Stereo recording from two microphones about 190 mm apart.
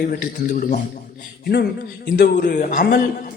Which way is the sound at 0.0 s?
50° left (ahead or behind).